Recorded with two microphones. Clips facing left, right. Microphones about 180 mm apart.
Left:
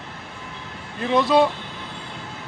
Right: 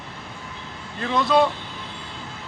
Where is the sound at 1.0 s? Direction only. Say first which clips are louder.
Left 2 dB; 10° left (ahead or behind).